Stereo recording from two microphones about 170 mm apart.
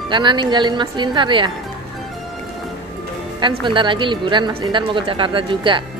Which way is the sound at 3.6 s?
30° right (ahead or behind).